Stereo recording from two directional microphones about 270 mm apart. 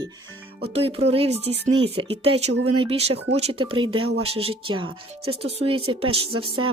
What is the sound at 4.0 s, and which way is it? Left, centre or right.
Speech, right.